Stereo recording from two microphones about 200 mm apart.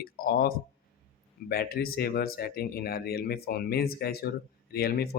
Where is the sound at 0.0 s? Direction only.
45° left (ahead or behind).